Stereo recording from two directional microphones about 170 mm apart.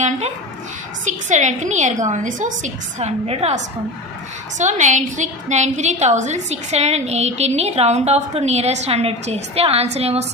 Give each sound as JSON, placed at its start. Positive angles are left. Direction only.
{"t": 1.0, "sound": "a woman's voice", "side_deg": -45}